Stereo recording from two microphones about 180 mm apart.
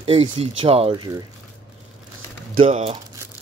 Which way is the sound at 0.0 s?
30° right (ahead or behind).